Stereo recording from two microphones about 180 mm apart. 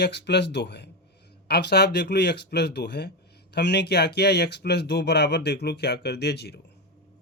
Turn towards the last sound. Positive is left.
turn(degrees=70)  # may be behind; listen again after turning